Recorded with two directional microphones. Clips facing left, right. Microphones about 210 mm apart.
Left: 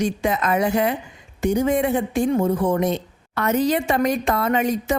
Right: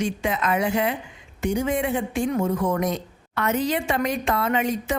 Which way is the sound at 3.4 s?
40° left (ahead or behind).